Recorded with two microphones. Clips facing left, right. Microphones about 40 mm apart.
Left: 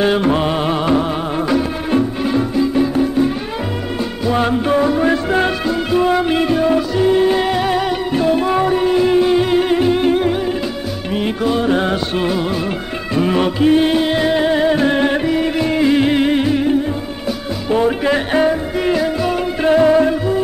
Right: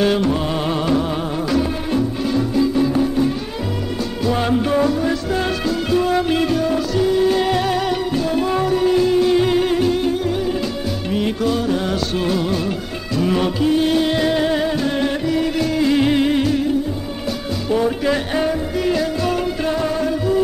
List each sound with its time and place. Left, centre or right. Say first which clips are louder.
0.0 s music: left 2 dB; left
0.3 s music: left 4 dB; left
0.7 s music: left 3 dB; centre
5.0 s music: left 5 dB; left; by 8.0 s centre
8.1 s music: left 4 dB; left
10.0 s music: left 5 dB; left
11.1 s music: left 2 dB; centre
11.6 s music: left 4 dB; left
14.7 s music: left 5 dB; left
17.6 s music: left 3 dB; left
19.7 s music: left 12 dB; left